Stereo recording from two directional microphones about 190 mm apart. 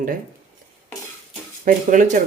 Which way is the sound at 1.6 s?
40° right (ahead or behind).